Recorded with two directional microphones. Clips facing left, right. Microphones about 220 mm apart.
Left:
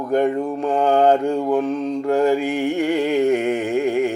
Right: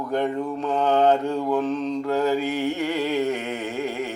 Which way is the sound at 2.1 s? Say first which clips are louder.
Left 6 dB; 50° left (ahead or behind).